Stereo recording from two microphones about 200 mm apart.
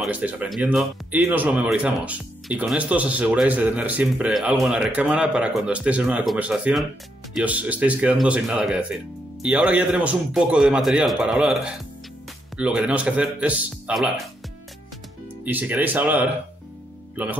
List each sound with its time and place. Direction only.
0.0 s a man's voice: 10° right (ahead or behind)
15.4 s speech: 10° right (ahead or behind)